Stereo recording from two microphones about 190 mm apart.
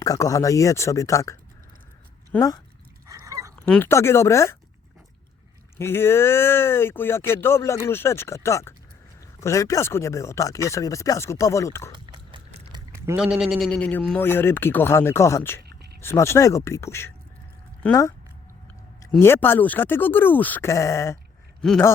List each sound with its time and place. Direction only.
0.0 s speech: 15° left (ahead or behind)
3.1 s dog: 15° right (ahead or behind)
3.5 s speech: 10° left (ahead or behind)
5.7 s speech: 10° left (ahead or behind)
12.1 s a sound: 30° right (ahead or behind)
12.7 s speech: 15° right (ahead or behind); by 18.0 s 5° left (ahead or behind)
19.2 s speech: 10° left (ahead or behind)
21.6 s speech: 5° left (ahead or behind)